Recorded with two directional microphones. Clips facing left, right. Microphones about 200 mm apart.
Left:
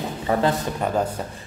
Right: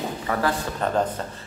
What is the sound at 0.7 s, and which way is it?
Speech, 10° left (ahead or behind).